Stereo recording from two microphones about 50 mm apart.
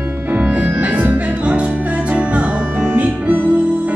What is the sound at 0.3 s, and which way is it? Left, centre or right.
Music, right.